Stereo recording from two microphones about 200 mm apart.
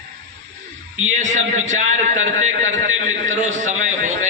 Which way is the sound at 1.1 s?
35° right (ahead or behind).